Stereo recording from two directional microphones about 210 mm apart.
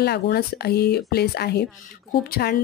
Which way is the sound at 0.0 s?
50° left (ahead or behind).